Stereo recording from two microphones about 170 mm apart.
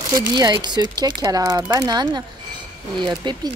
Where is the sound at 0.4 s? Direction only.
25° right (ahead or behind).